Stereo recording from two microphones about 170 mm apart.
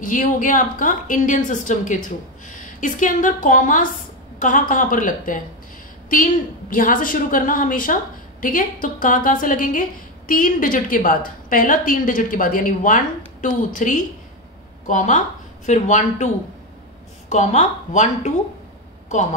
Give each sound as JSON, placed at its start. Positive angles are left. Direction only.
{"t": 0.0, "sound": "a woman's voice", "side_deg": 50}
{"t": 6.7, "sound": "a woman's voice", "side_deg": 55}
{"t": 17.3, "sound": "a woman's voice", "side_deg": 45}